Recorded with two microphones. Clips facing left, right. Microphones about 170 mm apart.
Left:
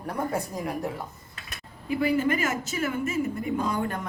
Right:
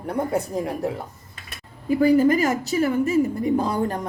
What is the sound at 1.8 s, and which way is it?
A woman's voice, 40° right (ahead or behind).